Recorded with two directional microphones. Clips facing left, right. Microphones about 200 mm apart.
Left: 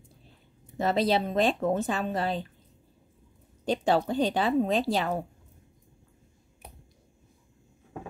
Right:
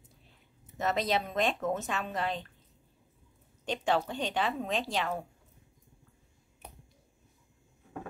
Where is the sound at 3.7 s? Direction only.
35° left (ahead or behind).